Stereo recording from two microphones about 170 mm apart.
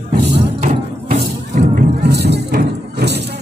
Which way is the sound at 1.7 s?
80° right.